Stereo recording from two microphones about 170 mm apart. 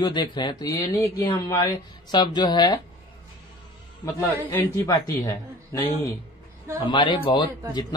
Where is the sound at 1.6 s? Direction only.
25° left (ahead or behind).